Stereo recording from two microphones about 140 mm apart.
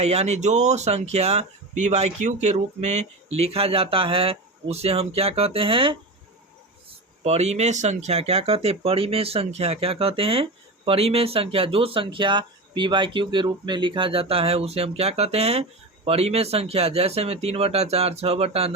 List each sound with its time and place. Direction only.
0.0 s speech: 50° right (ahead or behind)
7.3 s speech: 50° right (ahead or behind)